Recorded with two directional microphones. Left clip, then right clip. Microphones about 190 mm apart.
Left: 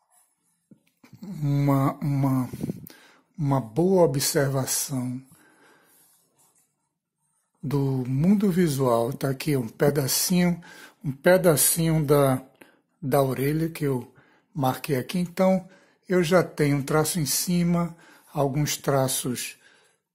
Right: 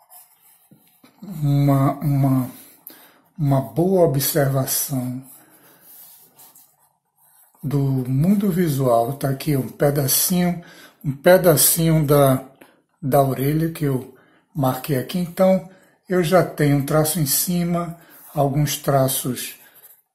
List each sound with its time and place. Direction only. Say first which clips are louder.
1.0 s speech: right 5 dB; 45° left (ahead or behind)
7.6 s speech: right 3 dB; 45° left (ahead or behind)